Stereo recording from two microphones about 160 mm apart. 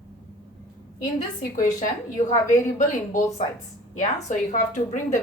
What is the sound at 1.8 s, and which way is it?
A woman's voice, 55° left (ahead or behind).